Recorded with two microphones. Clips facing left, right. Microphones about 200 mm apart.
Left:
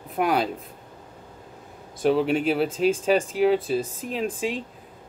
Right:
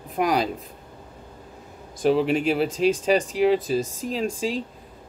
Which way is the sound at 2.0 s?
Centre (ahead or behind).